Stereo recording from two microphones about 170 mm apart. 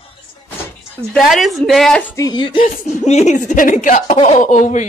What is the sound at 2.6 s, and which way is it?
Speech, 50° left (ahead or behind).